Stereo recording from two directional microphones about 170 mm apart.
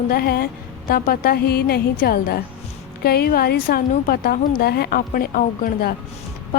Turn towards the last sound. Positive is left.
turn(degrees=55)  # may be behind; listen again after turning